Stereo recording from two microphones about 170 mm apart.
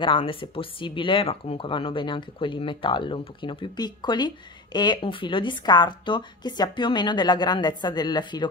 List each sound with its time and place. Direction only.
0.0 s speech: 30° left (ahead or behind)